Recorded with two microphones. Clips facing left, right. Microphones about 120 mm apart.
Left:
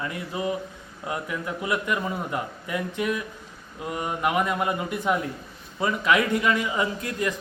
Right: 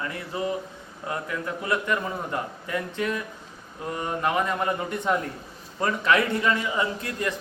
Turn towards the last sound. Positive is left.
turn(degrees=20)  # may be behind; listen again after turning